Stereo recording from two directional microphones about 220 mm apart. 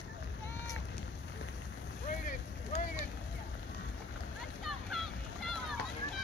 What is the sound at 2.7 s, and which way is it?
Vehicle, 50° left (ahead or behind).